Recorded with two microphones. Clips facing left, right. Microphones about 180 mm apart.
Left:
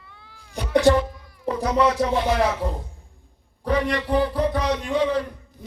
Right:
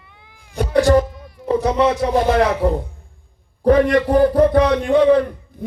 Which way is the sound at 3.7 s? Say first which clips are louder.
Right 9 dB; 50° right (ahead or behind).